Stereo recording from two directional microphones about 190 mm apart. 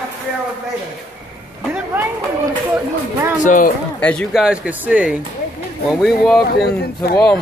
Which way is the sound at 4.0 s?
5° left (ahead or behind).